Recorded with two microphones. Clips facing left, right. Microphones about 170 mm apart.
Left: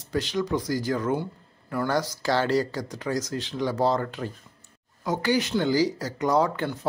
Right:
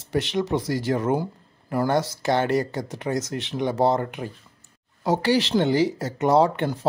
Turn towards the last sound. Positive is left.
turn(degrees=-30)  # may be behind; listen again after turning